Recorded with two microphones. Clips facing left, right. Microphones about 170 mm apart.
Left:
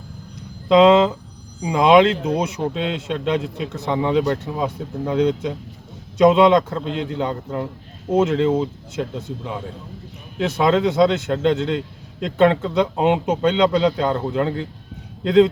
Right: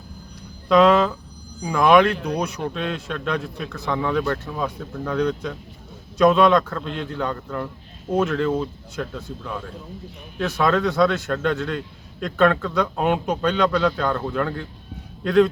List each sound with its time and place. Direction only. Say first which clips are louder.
0.7 s a man's voice: left 3 dB; 20° left (ahead or behind)